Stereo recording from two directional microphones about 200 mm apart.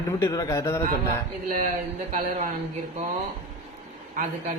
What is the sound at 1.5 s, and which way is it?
Speech, 40° right (ahead or behind).